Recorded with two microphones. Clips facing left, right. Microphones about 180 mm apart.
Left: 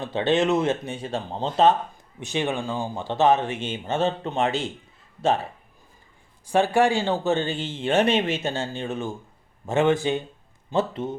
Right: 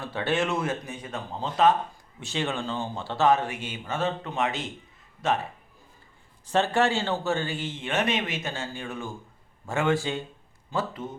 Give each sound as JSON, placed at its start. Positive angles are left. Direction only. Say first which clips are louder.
{"t": 0.0, "sound": "speech", "louder": "left 5 dB", "side_deg": 20}
{"t": 2.2, "sound": "speech", "louder": "left 4 dB", "side_deg": 15}
{"t": 6.4, "sound": "speech", "louder": "left 4 dB", "side_deg": 10}